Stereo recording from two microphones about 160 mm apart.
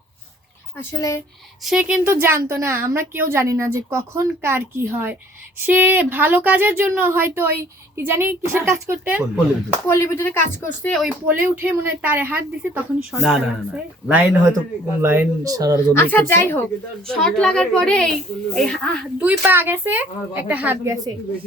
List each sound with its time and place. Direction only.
0.8 s speech: 15° left (ahead or behind)
1.6 s a child's voice: 5° right (ahead or behind)
9.6 s speech: 15° left (ahead or behind)
10.8 s a child's voice: 5° left (ahead or behind)
11.3 s a woman's voice: 10° right (ahead or behind)
15.9 s a child's voice: 10° left (ahead or behind)
19.2 s a woman's voice: 10° right (ahead or behind)